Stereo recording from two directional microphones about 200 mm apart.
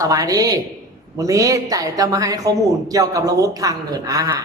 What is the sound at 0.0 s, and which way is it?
A woman's voice, 15° right (ahead or behind).